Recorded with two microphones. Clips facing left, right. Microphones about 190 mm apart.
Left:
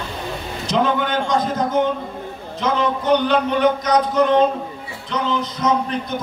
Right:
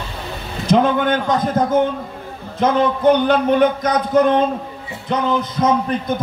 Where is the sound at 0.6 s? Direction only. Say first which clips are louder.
Right 5 dB; 50° right (ahead or behind).